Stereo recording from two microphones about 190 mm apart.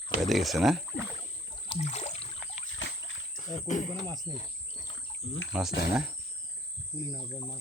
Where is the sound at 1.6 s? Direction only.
30° left (ahead or behind).